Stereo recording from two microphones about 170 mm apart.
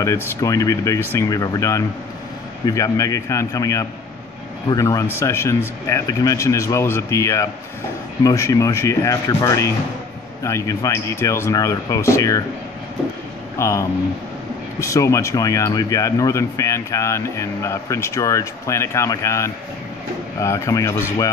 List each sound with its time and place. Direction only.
0.0 s speech: 15° left (ahead or behind)
13.6 s speech: 15° left (ahead or behind)